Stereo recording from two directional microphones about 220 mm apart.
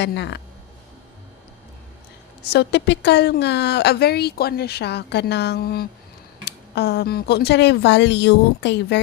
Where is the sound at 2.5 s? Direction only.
50° left (ahead or behind).